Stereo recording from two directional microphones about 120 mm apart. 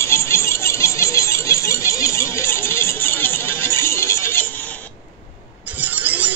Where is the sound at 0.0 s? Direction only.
20° left (ahead or behind).